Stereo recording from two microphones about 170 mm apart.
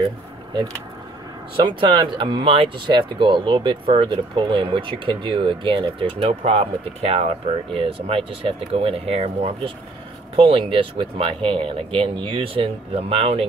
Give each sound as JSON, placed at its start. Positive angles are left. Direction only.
{"t": 1.6, "sound": "speech", "side_deg": -30}